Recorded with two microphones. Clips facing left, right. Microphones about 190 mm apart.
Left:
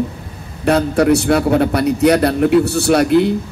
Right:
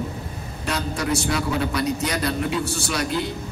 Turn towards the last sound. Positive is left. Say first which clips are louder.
# left 13 dB
turn(degrees=60)  # may be behind; listen again after turning